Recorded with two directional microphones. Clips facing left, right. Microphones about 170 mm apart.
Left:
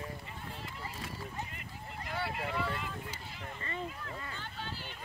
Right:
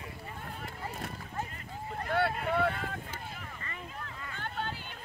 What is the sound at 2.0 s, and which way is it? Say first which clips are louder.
Vehicle: right 7 dB; 60° right (ahead or behind).